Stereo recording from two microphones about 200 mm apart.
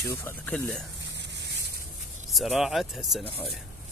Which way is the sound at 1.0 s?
60° right (ahead or behind).